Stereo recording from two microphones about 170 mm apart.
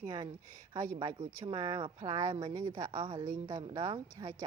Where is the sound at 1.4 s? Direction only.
25° right (ahead or behind).